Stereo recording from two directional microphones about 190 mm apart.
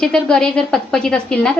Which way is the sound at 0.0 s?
5° left (ahead or behind).